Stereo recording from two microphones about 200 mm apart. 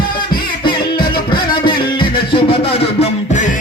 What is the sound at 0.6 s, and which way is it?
Music, 25° left (ahead or behind).